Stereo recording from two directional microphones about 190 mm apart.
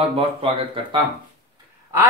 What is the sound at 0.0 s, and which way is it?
Speech, 30° right (ahead or behind).